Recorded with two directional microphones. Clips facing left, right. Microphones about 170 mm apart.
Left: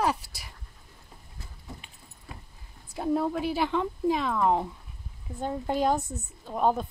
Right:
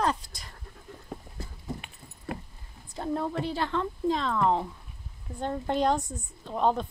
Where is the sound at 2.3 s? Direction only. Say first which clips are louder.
Right 11 dB; 65° right (ahead or behind).